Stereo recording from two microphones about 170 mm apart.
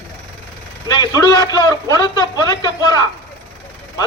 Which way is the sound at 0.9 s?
25° left (ahead or behind).